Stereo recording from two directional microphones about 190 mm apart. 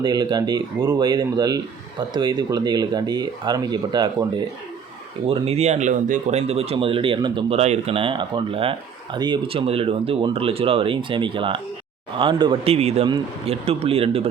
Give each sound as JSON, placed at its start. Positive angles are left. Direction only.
{"t": 0.0, "sound": "speech", "side_deg": -20}
{"t": 5.3, "sound": "speech", "side_deg": -35}